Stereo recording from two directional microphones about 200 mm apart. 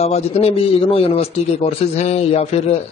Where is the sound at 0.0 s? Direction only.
30° left (ahead or behind).